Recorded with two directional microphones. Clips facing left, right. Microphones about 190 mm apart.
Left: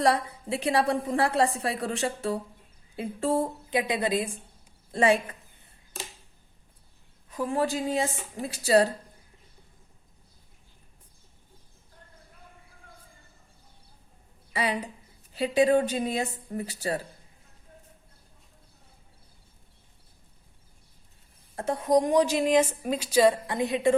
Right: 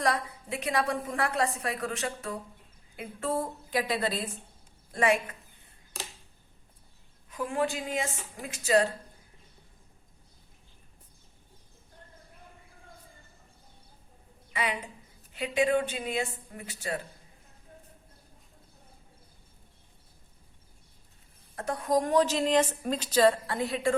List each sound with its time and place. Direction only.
0.0 s a woman's voice: 30° left (ahead or behind)
4.9 s a woman's voice: 30° left (ahead or behind)
7.3 s a woman's voice: 35° left (ahead or behind)
14.5 s a woman's voice: 35° left (ahead or behind)
21.5 s a woman's voice: 25° left (ahead or behind)